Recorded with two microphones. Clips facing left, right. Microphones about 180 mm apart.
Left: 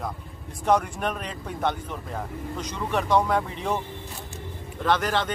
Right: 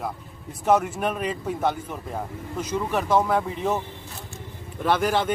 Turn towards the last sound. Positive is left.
turn(degrees=-10)  # may be behind; listen again after turning